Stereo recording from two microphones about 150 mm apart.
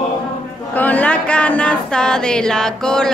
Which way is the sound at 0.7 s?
10° left (ahead or behind).